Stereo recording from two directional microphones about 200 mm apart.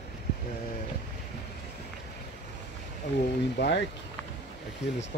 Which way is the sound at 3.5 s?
55° left (ahead or behind).